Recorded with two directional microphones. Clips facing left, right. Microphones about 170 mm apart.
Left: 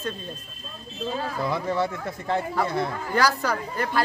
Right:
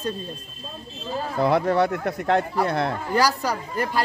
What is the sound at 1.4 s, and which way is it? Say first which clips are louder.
Speech: right 7 dB; 65° right (ahead or behind).